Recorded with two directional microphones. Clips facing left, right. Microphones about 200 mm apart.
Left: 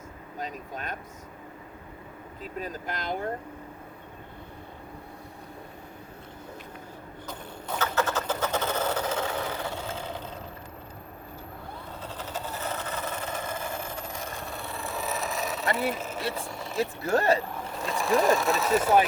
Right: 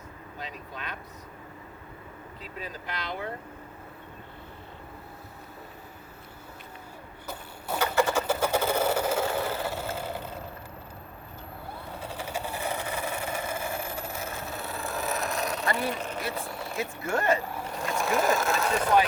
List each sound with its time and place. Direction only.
0.3 s speech: 45° left (ahead or behind)
2.4 s speech: 45° left (ahead or behind)
7.3 s a sound: 10° right (ahead or behind)
11.9 s vehicle: 10° right (ahead or behind)
17.0 s speech: 35° left (ahead or behind)
17.5 s speech: centre (ahead or behind)